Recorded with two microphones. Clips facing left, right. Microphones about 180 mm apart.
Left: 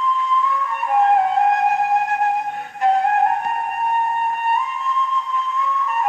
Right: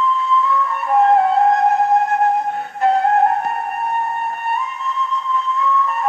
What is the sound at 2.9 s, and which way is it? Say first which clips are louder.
Flute: right 2 dB; 35° right (ahead or behind).